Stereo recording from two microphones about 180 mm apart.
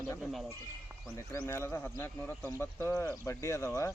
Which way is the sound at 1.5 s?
15° left (ahead or behind).